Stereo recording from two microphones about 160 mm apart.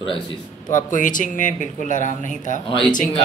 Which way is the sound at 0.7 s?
55° left (ahead or behind).